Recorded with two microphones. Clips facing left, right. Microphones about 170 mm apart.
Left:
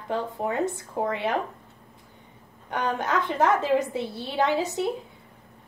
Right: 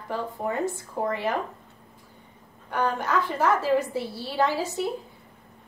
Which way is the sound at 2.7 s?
20° left (ahead or behind).